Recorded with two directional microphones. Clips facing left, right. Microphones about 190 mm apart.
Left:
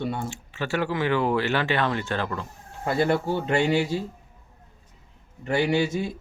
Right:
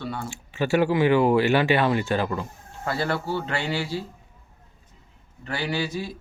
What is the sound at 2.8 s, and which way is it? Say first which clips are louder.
Speech: left 4 dB; 20° left (ahead or behind).